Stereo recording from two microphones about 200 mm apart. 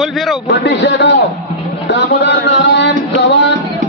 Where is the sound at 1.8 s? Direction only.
60° left (ahead or behind).